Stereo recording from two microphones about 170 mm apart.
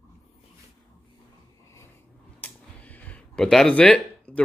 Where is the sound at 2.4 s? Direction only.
10° left (ahead or behind).